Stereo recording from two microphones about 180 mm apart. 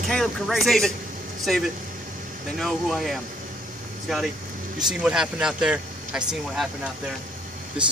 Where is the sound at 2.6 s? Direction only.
Centre (ahead or behind).